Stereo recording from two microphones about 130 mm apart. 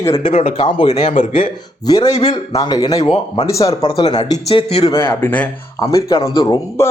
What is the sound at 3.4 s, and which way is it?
Speech, 25° left (ahead or behind).